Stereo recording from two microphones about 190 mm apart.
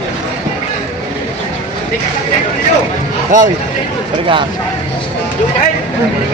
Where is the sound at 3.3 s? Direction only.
45° right (ahead or behind).